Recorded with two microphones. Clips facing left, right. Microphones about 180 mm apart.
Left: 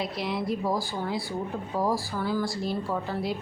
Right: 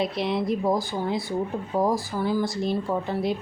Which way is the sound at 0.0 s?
25° right (ahead or behind).